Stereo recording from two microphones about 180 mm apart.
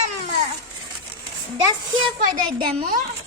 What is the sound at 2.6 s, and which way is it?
Speech, 35° right (ahead or behind).